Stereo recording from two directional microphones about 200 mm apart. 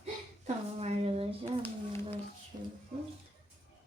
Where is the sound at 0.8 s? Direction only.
30° right (ahead or behind).